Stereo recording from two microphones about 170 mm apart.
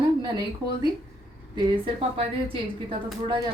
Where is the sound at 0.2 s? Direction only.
25° right (ahead or behind).